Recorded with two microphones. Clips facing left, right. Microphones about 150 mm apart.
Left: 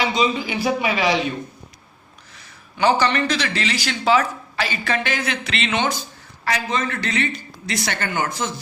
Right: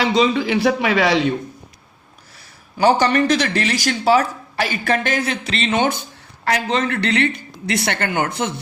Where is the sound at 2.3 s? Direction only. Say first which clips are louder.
Right 5 dB; 35° right (ahead or behind).